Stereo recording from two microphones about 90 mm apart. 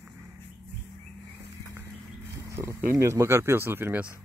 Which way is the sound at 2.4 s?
30° right (ahead or behind).